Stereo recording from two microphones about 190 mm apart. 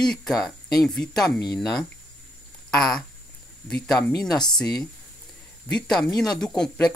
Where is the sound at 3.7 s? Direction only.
5° left (ahead or behind).